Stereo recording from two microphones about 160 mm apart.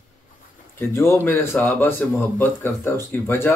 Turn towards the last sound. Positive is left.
turn(degrees=15)  # may be behind; listen again after turning